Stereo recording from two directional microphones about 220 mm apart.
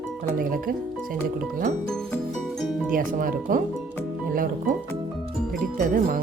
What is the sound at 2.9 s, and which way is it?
Speech, 40° right (ahead or behind).